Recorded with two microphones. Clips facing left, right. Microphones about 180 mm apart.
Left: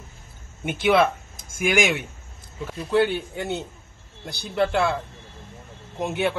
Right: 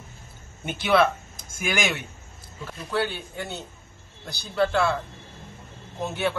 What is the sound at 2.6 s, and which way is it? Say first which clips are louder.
A man's voice: left 6 dB; 20° left (ahead or behind).